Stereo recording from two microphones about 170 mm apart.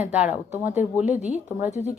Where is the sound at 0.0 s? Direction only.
10° right (ahead or behind).